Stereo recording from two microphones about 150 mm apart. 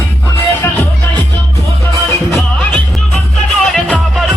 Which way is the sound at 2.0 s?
10° left (ahead or behind).